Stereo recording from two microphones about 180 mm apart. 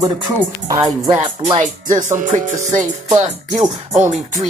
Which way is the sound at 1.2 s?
40° right (ahead or behind).